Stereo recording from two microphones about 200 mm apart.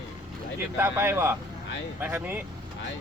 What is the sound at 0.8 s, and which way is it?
Speech, 10° right (ahead or behind).